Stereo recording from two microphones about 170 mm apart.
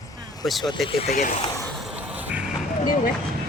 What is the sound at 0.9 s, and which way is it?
Speech, 35° left (ahead or behind).